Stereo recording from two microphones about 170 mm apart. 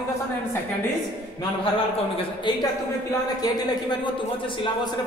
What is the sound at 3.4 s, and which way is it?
Speech, 20° left (ahead or behind).